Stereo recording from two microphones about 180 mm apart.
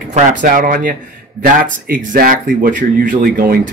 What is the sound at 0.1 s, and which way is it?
Speech, 45° right (ahead or behind).